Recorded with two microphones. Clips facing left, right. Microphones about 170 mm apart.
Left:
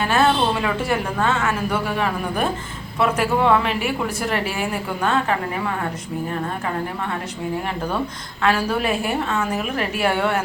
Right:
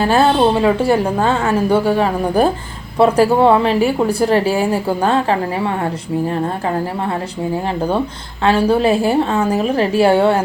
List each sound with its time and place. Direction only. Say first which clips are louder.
0.0 s a woman's voice: right 6 dB; 35° right (ahead or behind)
8.4 s a woman's voice: right 7 dB; 30° right (ahead or behind)